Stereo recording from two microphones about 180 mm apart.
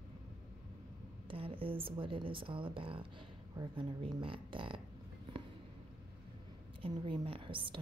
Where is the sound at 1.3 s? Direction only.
30° right (ahead or behind).